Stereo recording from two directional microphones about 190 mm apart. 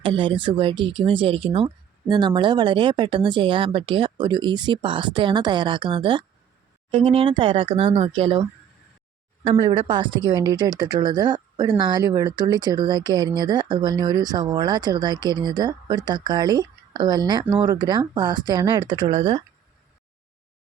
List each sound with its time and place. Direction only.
0.0 s speech: 25° right (ahead or behind)
9.6 s speech: 20° right (ahead or behind)